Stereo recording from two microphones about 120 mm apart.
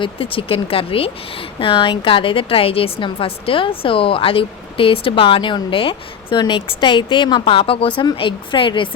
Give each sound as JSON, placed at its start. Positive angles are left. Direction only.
{"t": 0.0, "sound": "a woman's voice", "side_deg": 50}